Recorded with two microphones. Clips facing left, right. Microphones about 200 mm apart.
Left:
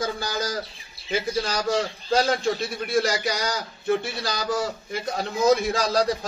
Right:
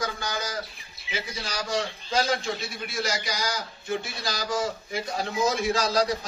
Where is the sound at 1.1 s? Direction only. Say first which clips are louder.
Left 8 dB; 55° left (ahead or behind).